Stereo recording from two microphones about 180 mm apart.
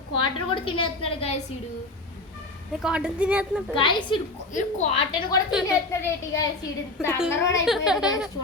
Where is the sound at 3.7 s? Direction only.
25° left (ahead or behind).